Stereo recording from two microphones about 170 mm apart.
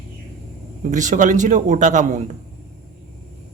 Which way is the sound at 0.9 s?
45° right (ahead or behind).